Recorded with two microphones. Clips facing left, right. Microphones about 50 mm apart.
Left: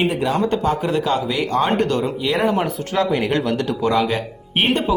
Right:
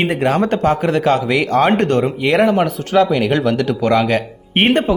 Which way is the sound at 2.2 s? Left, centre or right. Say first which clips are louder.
Right 6 dB; right.